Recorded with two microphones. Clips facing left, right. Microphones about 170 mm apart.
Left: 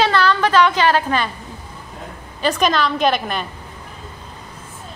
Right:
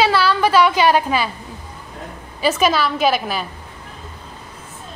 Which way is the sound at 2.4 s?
5° right (ahead or behind).